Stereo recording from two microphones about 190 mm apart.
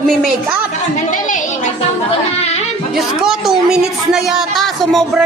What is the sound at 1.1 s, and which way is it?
Speech, 40° left (ahead or behind).